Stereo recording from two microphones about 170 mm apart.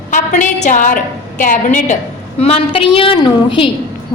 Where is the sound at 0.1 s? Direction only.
50° left (ahead or behind).